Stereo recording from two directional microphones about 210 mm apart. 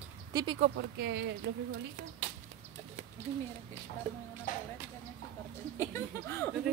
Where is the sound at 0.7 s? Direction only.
55° right (ahead or behind).